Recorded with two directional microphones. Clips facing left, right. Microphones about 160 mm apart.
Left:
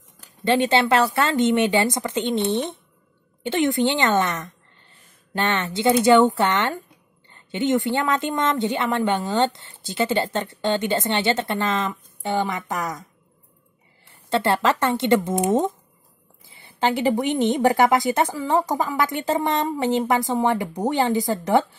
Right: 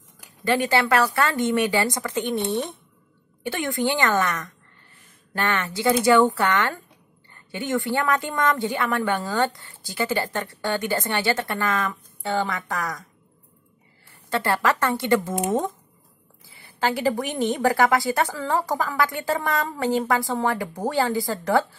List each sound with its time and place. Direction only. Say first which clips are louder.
0.5 s speech: left 2 dB; 25° left (ahead or behind)
14.3 s speech: left 2 dB; 25° left (ahead or behind)